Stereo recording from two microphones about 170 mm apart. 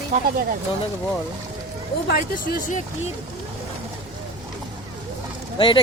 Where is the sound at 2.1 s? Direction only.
55° left (ahead or behind).